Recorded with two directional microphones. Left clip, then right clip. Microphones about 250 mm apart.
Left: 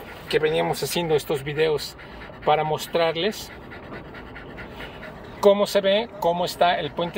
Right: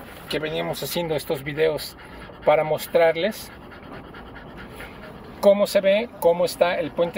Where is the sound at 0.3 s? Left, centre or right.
Centre.